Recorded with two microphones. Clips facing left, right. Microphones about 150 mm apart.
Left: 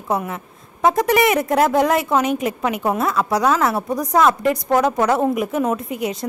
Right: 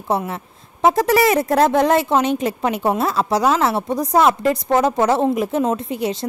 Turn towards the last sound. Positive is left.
turn(degrees=-30)  # may be behind; listen again after turning